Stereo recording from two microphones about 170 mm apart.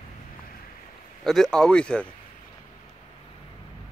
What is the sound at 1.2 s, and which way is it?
Speech, centre (ahead or behind).